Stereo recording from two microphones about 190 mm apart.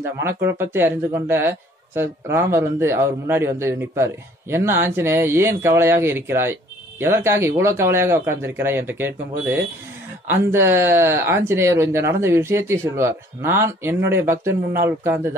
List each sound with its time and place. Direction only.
0.2 s speech: 15° right (ahead or behind)